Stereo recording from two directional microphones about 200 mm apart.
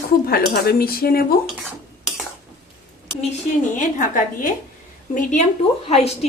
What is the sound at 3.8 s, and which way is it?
A woman's voice, 40° left (ahead or behind).